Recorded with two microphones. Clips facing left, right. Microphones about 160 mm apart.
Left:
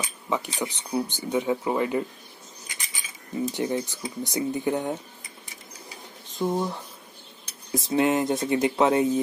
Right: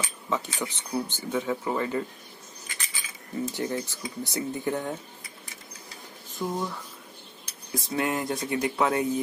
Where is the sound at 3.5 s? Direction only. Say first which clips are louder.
Left 5 dB; 15° left (ahead or behind).